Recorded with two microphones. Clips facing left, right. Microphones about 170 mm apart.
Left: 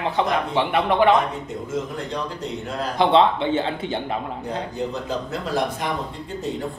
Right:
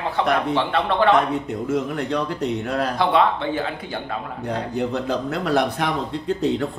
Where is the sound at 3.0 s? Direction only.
25° left (ahead or behind).